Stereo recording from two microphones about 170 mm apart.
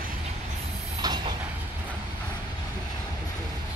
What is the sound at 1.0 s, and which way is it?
Train, 25° right (ahead or behind).